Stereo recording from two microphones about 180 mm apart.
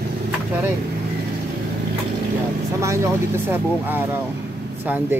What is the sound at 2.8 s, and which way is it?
Speech, 15° right (ahead or behind).